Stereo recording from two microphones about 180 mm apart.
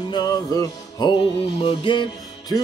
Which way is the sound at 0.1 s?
20° left (ahead or behind).